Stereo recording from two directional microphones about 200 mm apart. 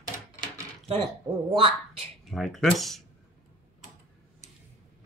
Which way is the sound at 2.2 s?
Centre (ahead or behind).